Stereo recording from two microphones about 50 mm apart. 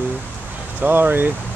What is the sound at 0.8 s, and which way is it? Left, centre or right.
Speech, right.